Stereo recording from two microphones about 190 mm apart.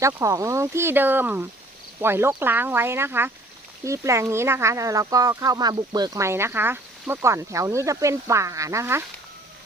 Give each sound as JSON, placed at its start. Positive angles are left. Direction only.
{"t": 0.0, "sound": "speech", "side_deg": -15}